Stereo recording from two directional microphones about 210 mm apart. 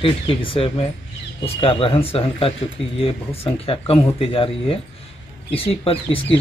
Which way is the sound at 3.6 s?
25° left (ahead or behind).